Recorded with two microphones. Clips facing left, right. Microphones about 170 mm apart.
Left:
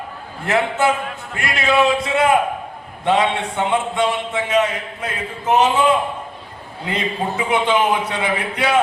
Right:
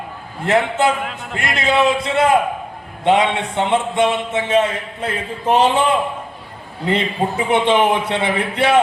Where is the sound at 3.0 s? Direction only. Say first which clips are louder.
Right 2 dB; 20° right (ahead or behind).